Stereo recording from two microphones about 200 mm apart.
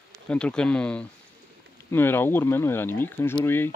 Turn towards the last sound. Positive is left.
turn(degrees=10)  # may be behind; listen again after turning